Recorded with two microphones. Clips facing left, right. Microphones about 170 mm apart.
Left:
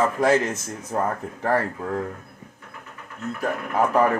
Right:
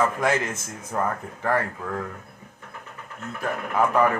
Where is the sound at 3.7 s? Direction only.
35° left (ahead or behind).